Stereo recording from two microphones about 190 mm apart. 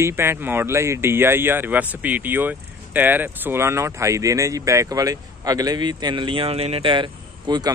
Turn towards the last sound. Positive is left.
turn(degrees=-20)  # may be behind; listen again after turning